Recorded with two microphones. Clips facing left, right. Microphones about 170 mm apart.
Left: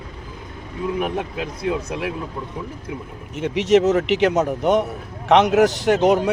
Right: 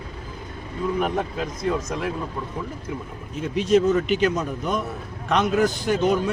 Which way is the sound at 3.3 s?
80° left.